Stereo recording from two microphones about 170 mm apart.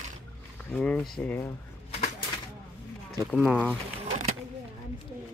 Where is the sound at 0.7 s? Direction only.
5° left (ahead or behind).